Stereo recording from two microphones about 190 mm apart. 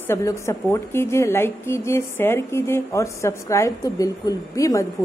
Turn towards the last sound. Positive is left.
turn(degrees=15)  # may be behind; listen again after turning